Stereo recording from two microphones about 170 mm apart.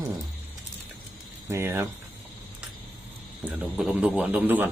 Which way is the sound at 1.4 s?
15° right (ahead or behind).